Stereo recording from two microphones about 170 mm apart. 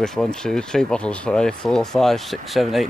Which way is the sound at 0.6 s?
5° left (ahead or behind).